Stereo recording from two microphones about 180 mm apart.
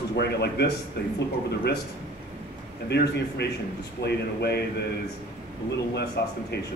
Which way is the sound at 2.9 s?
65° left (ahead or behind).